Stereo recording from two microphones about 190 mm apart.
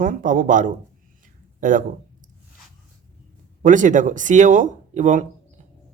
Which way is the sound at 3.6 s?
40° right (ahead or behind).